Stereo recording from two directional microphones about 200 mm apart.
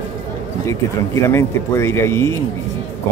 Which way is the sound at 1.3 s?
15° left (ahead or behind).